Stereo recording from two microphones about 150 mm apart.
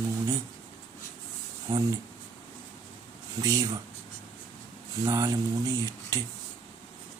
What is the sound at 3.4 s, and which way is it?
Speech, 25° right (ahead or behind).